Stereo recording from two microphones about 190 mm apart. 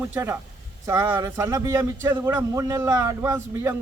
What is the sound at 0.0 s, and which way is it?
A man's voice, 10° right (ahead or behind).